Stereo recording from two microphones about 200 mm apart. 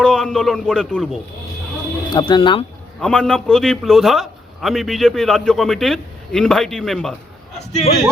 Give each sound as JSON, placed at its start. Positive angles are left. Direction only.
{"t": 0.0, "sound": "a man's voice", "side_deg": 0}
{"t": 2.1, "sound": "speech", "side_deg": 25}
{"t": 3.0, "sound": "a man's voice", "side_deg": 5}
{"t": 7.7, "sound": "a man's voice", "side_deg": 35}